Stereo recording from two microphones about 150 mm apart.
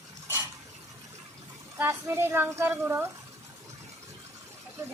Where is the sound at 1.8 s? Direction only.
15° right (ahead or behind).